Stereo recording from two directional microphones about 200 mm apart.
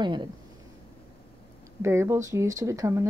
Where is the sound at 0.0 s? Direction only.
20° right (ahead or behind).